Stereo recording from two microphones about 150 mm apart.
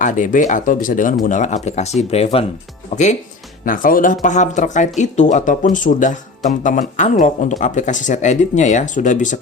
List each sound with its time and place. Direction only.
0.0 s speech: 60° left (ahead or behind)
3.7 s speech: 65° left (ahead or behind)